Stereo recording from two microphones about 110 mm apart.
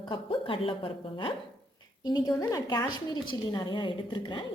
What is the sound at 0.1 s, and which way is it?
A woman's voice, 55° left (ahead or behind).